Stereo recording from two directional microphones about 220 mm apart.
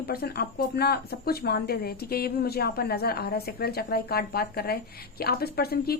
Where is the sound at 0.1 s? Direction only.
45° left (ahead or behind).